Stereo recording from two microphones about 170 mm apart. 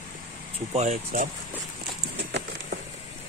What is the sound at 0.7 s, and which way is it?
Speech, 40° right (ahead or behind).